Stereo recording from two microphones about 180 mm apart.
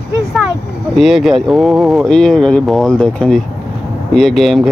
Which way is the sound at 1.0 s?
Centre (ahead or behind).